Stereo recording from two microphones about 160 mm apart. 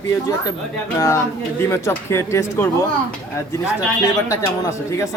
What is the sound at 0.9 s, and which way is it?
Speech, 20° left (ahead or behind).